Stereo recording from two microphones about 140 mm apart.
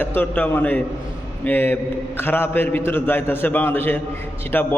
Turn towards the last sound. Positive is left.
turn(degrees=15)  # may be behind; listen again after turning